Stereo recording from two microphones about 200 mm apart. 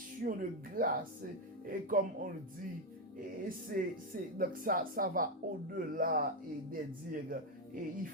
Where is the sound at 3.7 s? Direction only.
45° right (ahead or behind).